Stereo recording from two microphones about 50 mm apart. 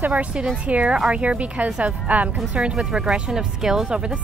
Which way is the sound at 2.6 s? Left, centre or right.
Centre.